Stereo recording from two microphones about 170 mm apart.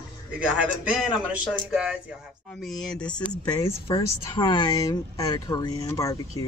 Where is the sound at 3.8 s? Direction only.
30° left (ahead or behind).